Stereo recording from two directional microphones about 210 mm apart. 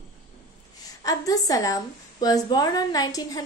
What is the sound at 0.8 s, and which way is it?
A woman's voice, 15° left (ahead or behind).